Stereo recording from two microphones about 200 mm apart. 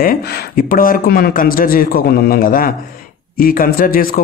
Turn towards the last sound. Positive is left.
turn(degrees=45)  # may be behind; listen again after turning